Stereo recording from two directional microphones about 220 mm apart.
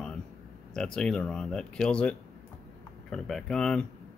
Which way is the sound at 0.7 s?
5° left (ahead or behind).